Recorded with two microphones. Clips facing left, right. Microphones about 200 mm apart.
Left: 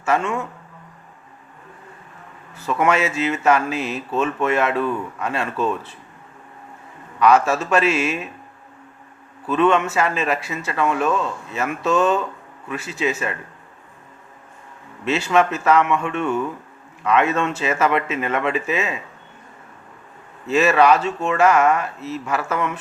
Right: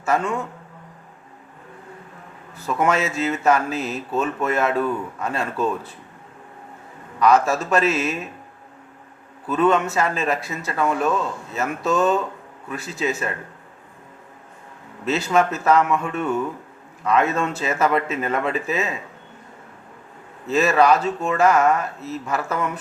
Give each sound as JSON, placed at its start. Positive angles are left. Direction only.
{"t": 0.0, "sound": "speech", "side_deg": -35}
{"t": 2.6, "sound": "speech", "side_deg": -40}
{"t": 7.4, "sound": "speech", "side_deg": -40}
{"t": 9.5, "sound": "speech", "side_deg": -40}
{"t": 15.0, "sound": "speech", "side_deg": -40}
{"t": 20.5, "sound": "speech", "side_deg": -40}